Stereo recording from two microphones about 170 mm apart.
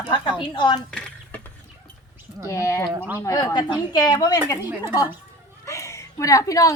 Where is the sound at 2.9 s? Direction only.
10° right (ahead or behind).